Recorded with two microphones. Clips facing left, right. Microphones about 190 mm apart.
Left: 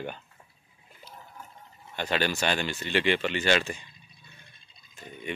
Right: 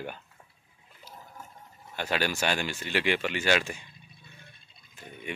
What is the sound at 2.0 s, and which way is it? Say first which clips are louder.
A man's voice: left 1 dB; 10° right (ahead or behind).